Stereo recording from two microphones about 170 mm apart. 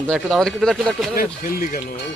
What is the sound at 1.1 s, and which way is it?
Speech, 55° left (ahead or behind).